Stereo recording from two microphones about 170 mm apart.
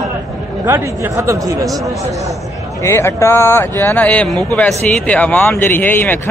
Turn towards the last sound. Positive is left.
turn(degrees=10)  # may be behind; listen again after turning